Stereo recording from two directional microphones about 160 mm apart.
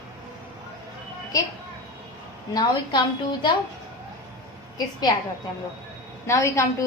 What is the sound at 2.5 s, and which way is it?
A woman's voice, 25° left (ahead or behind).